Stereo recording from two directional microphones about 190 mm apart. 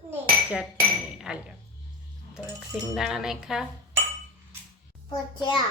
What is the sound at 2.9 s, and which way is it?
Speech, centre (ahead or behind).